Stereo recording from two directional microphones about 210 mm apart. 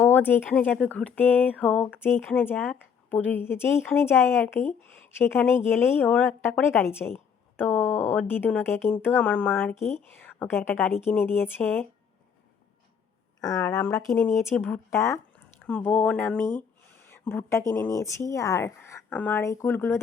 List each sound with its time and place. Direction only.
0.0 s a woman's voice: 10° left (ahead or behind)
9.7 s speech: 30° left (ahead or behind)
10.2 s a woman's voice: 10° left (ahead or behind)
13.4 s a woman's voice: 15° left (ahead or behind)